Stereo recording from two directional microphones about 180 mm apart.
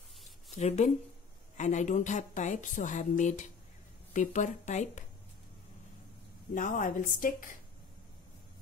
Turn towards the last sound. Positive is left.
turn(degrees=50)  # may be behind; listen again after turning